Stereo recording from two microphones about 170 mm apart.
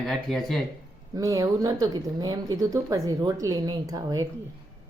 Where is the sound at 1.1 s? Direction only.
20° right (ahead or behind).